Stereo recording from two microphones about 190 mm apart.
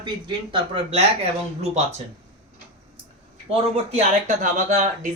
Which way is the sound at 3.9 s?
40° right (ahead or behind).